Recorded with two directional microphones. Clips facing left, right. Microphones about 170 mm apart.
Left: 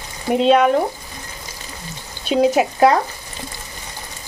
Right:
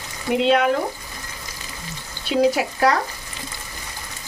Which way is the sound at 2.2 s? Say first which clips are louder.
Left 3 dB; 20° left (ahead or behind).